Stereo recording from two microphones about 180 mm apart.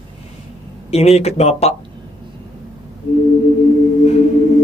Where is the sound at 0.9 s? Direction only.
35° left (ahead or behind).